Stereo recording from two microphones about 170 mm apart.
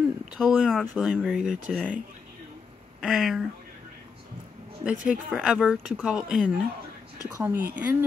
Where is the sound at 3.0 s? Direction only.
5° right (ahead or behind).